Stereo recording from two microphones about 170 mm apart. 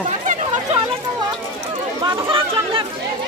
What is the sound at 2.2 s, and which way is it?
Speech, 30° right (ahead or behind).